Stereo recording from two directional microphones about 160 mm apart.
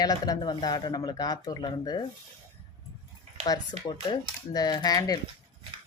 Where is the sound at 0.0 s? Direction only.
25° left (ahead or behind).